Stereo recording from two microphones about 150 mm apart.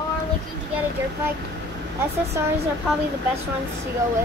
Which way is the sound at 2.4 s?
15° right (ahead or behind).